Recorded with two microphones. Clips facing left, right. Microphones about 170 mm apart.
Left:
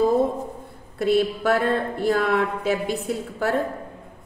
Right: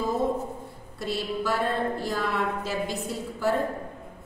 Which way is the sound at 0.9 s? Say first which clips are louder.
Left 9 dB; 60° left (ahead or behind).